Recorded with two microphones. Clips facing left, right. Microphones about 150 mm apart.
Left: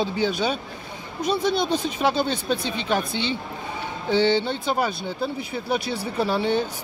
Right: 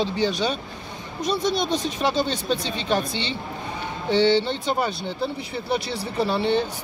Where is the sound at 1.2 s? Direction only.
5° left (ahead or behind).